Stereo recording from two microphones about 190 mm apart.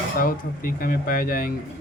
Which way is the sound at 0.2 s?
50° left (ahead or behind).